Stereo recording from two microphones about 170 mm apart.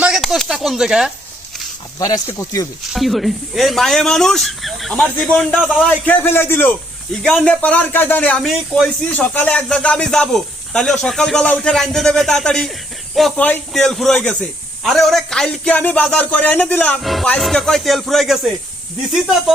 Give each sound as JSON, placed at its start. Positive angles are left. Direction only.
{"t": 0.0, "sound": "a sound", "side_deg": -5}
{"t": 2.0, "sound": "speech", "side_deg": 20}
{"t": 2.9, "sound": "speech", "side_deg": 0}
{"t": 6.1, "sound": "a man's voice", "side_deg": 15}